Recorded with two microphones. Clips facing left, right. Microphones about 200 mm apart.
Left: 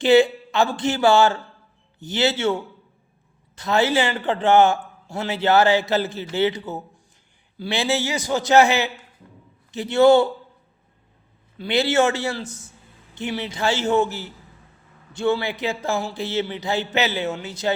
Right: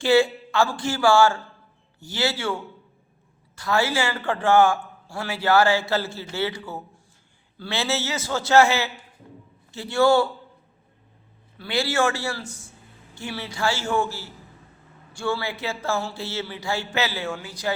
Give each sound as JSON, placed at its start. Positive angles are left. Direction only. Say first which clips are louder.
{"t": 0.0, "sound": "a man's voice", "louder": "left 4 dB", "side_deg": 20}
{"t": 11.5, "sound": "a man's voice", "louder": "left 5 dB", "side_deg": 20}